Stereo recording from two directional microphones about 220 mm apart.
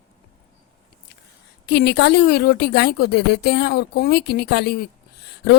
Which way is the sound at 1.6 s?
50° left (ahead or behind).